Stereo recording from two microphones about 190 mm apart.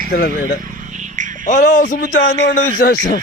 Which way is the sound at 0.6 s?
45° right (ahead or behind).